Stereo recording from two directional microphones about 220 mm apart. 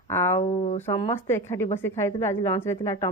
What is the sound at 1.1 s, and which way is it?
A woman's voice, 10° left (ahead or behind).